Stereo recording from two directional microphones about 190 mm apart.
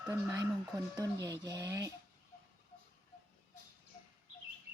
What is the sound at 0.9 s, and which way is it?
Speech, 20° right (ahead or behind).